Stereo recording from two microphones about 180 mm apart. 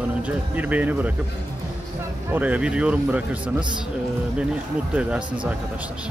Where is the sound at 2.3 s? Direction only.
10° right (ahead or behind).